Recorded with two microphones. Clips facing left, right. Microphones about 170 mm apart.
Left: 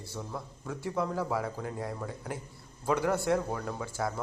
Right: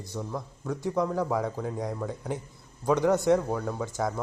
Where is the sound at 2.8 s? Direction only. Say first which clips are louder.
Right 5 dB; 20° right (ahead or behind).